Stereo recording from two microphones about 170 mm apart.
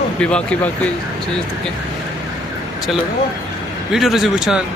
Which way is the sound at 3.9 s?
Centre (ahead or behind).